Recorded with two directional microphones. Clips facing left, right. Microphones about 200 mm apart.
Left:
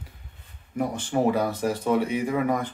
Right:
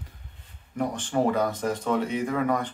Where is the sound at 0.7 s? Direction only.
10° left (ahead or behind).